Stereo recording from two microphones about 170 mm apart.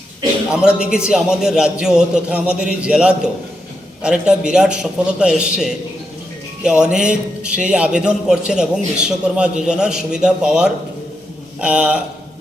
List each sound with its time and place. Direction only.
0.5 s a man's voice: 5° right (ahead or behind)